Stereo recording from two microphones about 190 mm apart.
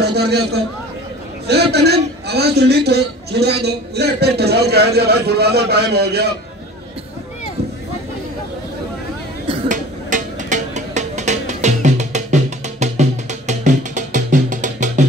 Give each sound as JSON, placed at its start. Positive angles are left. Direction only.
{"t": 0.0, "sound": "a man's voice", "side_deg": -60}
{"t": 9.7, "sound": "music", "side_deg": -40}